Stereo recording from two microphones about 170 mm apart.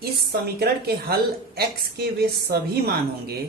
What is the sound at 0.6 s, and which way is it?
Speech, 65° right (ahead or behind).